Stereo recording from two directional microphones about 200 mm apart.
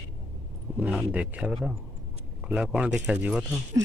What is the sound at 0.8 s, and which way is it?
Speech, 5° right (ahead or behind).